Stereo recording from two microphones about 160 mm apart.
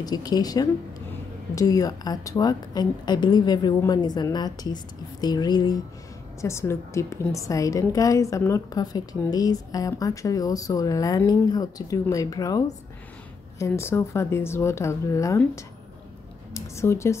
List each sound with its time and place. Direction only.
0.0 s a woman's voice: 25° left (ahead or behind)